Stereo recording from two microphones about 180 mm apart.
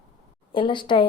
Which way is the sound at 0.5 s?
25° left (ahead or behind).